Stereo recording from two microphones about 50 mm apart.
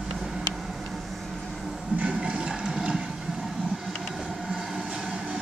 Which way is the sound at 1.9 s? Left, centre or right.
Right.